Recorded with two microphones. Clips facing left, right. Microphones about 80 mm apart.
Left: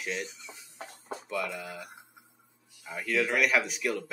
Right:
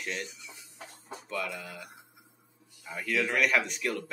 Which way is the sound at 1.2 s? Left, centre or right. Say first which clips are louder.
Left 1 dB; centre.